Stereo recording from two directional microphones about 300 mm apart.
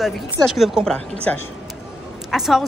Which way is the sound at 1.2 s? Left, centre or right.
Centre.